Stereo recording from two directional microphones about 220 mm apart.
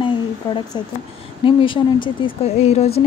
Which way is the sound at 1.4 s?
20° left (ahead or behind).